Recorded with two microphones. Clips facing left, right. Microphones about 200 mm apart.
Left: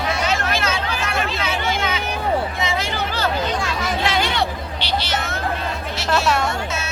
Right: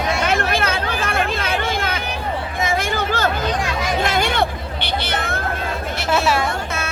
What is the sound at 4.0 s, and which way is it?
Hubbub, 45° right (ahead or behind).